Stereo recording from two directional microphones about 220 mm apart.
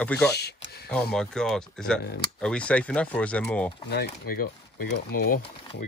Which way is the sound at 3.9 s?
45° left (ahead or behind).